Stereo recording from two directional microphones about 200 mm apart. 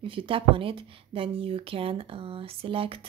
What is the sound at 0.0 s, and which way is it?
A woman's voice, 25° right (ahead or behind).